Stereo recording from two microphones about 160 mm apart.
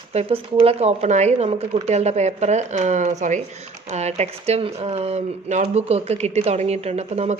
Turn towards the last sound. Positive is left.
turn(degrees=-45)  # may be behind; listen again after turning